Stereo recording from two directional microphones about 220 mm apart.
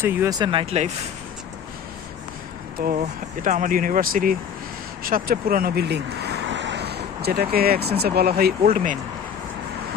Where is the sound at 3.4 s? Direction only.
35° right (ahead or behind).